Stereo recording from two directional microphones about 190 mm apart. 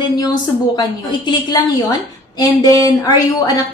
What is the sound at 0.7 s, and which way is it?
A woman's voice, 20° left (ahead or behind).